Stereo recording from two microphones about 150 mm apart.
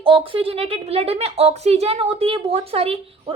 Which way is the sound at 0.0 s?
35° right (ahead or behind).